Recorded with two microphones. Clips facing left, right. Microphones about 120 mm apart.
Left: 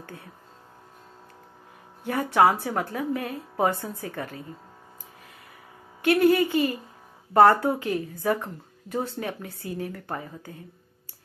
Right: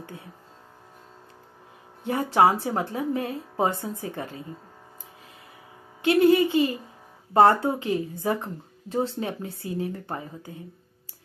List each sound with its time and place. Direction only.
2.0 s speech: 25° right (ahead or behind)
6.0 s speech: 25° right (ahead or behind)